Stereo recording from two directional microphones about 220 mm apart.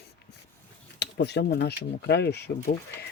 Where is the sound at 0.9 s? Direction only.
50° left (ahead or behind).